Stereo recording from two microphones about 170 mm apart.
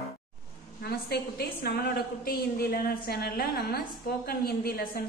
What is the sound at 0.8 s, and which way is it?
A woman's voice, 70° left (ahead or behind).